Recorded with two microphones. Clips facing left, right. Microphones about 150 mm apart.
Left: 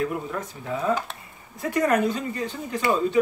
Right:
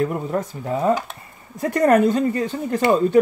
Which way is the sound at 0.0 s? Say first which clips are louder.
Right 5 dB; 40° right (ahead or behind).